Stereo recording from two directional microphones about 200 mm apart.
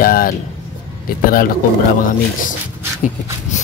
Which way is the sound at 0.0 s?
45° left (ahead or behind).